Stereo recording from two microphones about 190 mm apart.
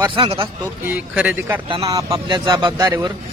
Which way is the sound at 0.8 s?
10° right (ahead or behind).